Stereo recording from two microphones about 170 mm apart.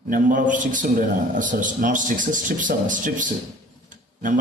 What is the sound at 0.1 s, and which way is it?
A man's voice, 50° right (ahead or behind).